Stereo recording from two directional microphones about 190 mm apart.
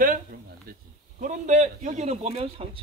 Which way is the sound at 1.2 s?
40° right (ahead or behind).